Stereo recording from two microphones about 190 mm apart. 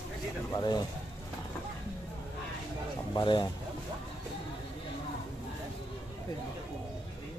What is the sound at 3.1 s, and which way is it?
Speech, 25° left (ahead or behind).